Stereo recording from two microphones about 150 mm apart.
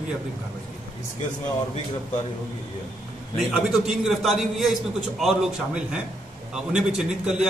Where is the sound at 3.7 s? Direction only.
Centre (ahead or behind).